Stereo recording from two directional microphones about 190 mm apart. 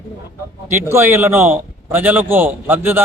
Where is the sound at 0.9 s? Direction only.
10° right (ahead or behind).